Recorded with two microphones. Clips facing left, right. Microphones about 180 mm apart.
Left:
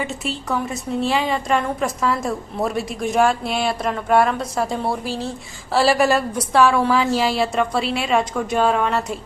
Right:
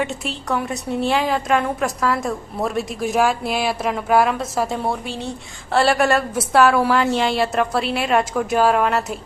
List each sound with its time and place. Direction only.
0.0 s a woman's voice: centre (ahead or behind)